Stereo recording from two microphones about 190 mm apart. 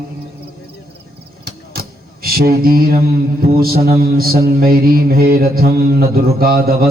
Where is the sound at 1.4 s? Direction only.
50° right (ahead or behind).